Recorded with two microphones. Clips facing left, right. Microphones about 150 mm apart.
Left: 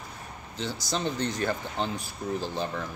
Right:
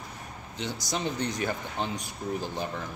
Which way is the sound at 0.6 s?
20° right (ahead or behind).